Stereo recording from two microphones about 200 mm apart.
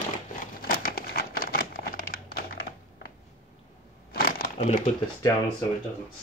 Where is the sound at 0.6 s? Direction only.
50° left (ahead or behind).